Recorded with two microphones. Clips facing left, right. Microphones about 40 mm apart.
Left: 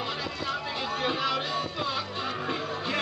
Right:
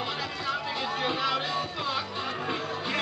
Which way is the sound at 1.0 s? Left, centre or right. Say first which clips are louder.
Even; centre.